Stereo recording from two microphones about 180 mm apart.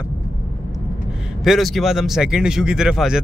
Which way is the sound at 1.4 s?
Centre (ahead or behind).